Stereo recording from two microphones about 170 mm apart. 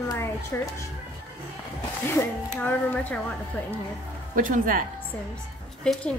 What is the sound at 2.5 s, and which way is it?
Speech, 10° left (ahead or behind).